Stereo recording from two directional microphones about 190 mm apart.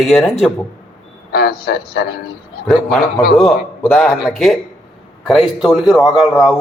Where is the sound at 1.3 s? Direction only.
55° left (ahead or behind).